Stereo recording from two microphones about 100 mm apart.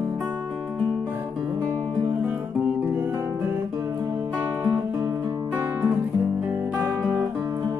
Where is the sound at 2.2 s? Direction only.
15° right (ahead or behind).